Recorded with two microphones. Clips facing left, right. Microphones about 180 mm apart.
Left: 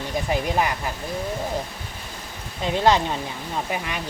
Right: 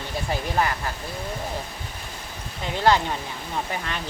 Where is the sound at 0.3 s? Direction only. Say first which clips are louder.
Left 1 dB; 15° left (ahead or behind).